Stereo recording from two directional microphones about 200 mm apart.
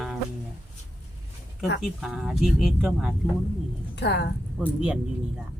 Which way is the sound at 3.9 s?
55° left (ahead or behind).